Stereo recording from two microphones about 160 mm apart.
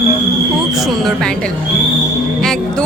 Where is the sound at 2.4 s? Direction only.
Centre (ahead or behind).